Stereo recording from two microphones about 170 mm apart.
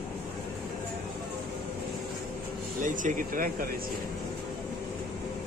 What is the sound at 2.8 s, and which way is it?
Speech, 50° right (ahead or behind).